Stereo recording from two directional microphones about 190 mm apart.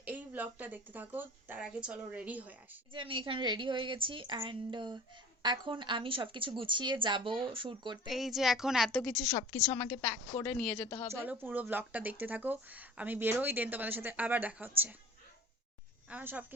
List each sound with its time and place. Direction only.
0.0 s a woman's voice: 10° right (ahead or behind)
2.9 s speech: 25° right (ahead or behind)
8.0 s a woman's voice: centre (ahead or behind); by 11.1 s 20° left (ahead or behind)
11.1 s speech: 10° right (ahead or behind)
16.0 s a woman's voice: 10° right (ahead or behind)